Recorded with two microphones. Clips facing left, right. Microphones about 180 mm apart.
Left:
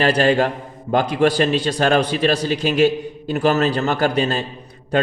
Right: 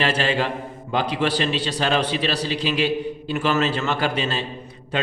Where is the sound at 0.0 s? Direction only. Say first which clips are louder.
Left 6 dB; 45° left (ahead or behind).